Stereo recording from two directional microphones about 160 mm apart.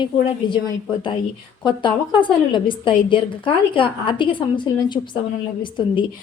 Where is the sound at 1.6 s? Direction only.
30° left (ahead or behind).